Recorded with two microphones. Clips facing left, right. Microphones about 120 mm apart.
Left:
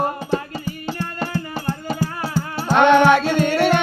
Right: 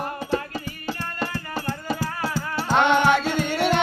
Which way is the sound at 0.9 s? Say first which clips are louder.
Left 3 dB; 25° left (ahead or behind).